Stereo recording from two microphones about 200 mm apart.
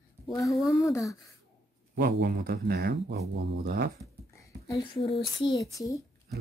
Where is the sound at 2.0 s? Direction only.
55° right (ahead or behind).